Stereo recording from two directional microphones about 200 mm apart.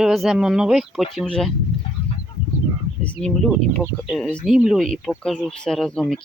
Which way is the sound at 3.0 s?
5° left (ahead or behind).